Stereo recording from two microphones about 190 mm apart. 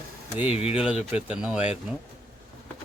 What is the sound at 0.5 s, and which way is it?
Speech, 30° left (ahead or behind).